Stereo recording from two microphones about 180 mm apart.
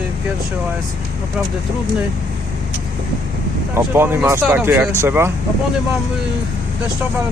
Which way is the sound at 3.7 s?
10° right (ahead or behind).